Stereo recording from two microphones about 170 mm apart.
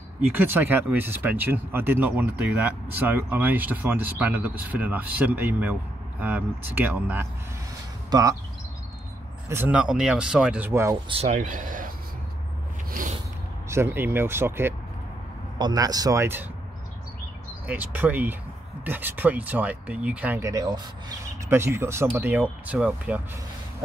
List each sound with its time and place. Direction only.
0.3 s speech: 10° right (ahead or behind)
9.5 s speech: 10° right (ahead or behind)
11.1 s speech: 40° right (ahead or behind)
13.7 s speech: 15° right (ahead or behind)
17.6 s speech: 10° right (ahead or behind)